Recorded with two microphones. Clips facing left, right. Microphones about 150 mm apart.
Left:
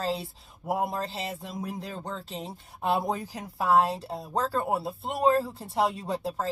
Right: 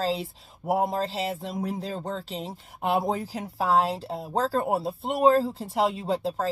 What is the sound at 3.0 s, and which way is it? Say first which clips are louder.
Speech: right 3 dB; 30° right (ahead or behind).